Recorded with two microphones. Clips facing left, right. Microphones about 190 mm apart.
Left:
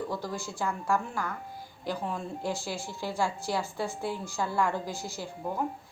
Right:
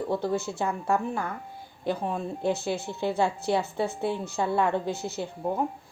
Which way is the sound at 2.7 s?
60° right (ahead or behind).